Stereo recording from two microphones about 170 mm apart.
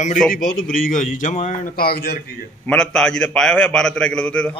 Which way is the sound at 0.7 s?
50° left (ahead or behind).